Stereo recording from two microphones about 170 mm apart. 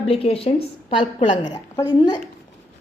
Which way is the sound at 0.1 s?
35° left (ahead or behind).